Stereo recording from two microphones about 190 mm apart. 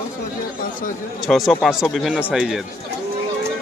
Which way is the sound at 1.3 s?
Centre (ahead or behind).